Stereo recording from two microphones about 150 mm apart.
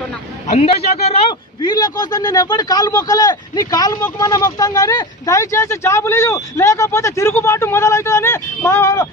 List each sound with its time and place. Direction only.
0.5 s a man's voice: 50° left (ahead or behind)
1.6 s a man's voice: 25° left (ahead or behind)